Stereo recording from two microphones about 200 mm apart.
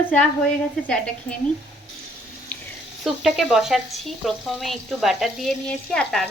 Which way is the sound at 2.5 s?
10° left (ahead or behind).